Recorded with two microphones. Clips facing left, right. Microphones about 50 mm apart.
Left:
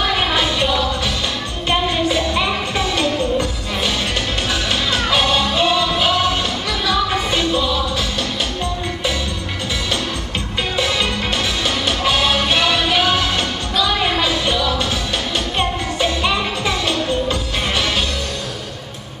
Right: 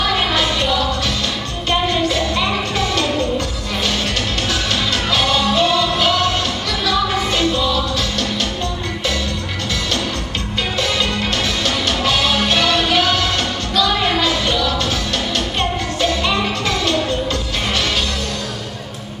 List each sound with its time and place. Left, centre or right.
0.0 s a sound: centre
1.7 s music: centre
4.9 s music: centre
11.6 s music: centre
16.0 s music: centre